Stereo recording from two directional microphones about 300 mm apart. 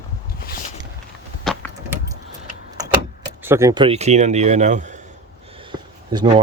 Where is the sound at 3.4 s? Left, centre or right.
Centre.